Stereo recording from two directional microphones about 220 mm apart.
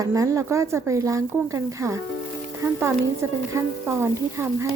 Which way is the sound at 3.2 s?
10° right (ahead or behind).